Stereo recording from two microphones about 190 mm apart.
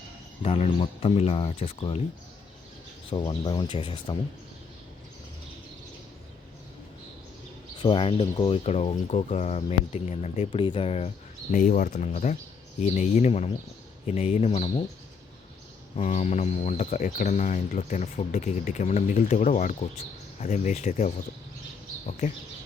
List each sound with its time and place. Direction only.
0.4 s speech: 30° left (ahead or behind)
3.1 s speech: 25° left (ahead or behind)
7.8 s speech: 25° left (ahead or behind)
11.5 s speech: 45° left (ahead or behind)
16.0 s speech: 35° left (ahead or behind)